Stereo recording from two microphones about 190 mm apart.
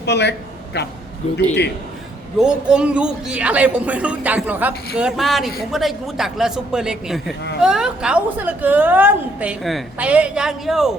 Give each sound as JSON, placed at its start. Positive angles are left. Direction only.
{"t": 0.0, "sound": "a man's voice", "side_deg": 60}
{"t": 2.4, "sound": "a woman's voice", "side_deg": -5}